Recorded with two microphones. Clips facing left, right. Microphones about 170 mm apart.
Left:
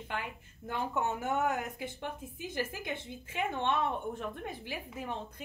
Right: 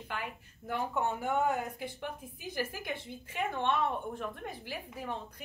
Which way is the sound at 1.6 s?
20° left (ahead or behind).